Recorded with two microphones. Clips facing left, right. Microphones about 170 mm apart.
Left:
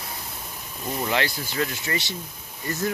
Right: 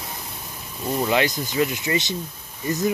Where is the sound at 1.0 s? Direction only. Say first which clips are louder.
Right 5 dB; 20° right (ahead or behind).